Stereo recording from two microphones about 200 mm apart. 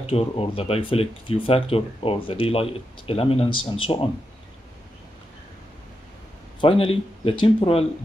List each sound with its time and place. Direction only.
0.0 s speech: 30° left (ahead or behind)
6.6 s speech: 25° left (ahead or behind)